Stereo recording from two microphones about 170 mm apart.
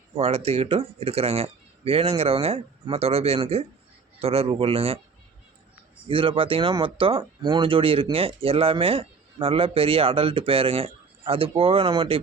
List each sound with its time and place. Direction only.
0.2 s speech: 35° right (ahead or behind)
6.1 s speech: 30° right (ahead or behind)